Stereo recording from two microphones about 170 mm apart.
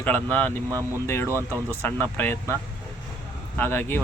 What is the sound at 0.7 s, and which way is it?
Speech, 20° right (ahead or behind).